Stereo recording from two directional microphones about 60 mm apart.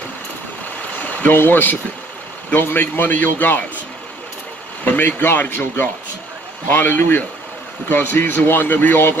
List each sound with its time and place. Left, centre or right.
0.9 s a man's voice: left
4.8 s a man's voice: left